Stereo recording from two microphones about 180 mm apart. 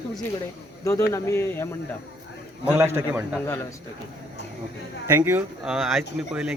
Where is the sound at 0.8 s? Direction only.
15° left (ahead or behind).